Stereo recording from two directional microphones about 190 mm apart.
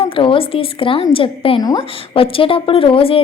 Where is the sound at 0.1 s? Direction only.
25° left (ahead or behind).